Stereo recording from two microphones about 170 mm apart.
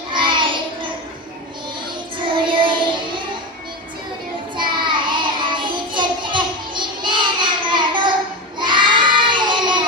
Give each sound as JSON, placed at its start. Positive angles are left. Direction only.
{"t": 0.1, "sound": "child singing", "side_deg": -30}
{"t": 2.2, "sound": "music", "side_deg": -30}
{"t": 4.5, "sound": "child singing", "side_deg": -30}